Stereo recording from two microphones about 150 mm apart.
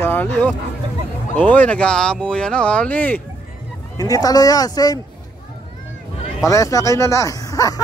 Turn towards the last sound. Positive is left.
turn(degrees=25)  # may be behind; listen again after turning